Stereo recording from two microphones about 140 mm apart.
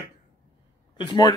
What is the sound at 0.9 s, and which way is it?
Speech, 30° left (ahead or behind).